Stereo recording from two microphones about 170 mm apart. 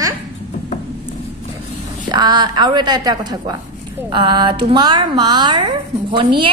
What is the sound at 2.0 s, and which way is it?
A woman's voice, 25° right (ahead or behind).